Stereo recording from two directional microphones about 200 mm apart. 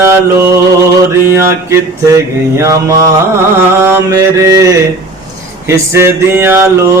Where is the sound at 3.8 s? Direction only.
15° right (ahead or behind).